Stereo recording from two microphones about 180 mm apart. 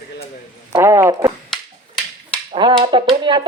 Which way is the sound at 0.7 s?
15° right (ahead or behind).